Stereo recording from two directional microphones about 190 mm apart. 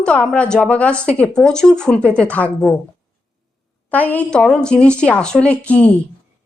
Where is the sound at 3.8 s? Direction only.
10° left (ahead or behind).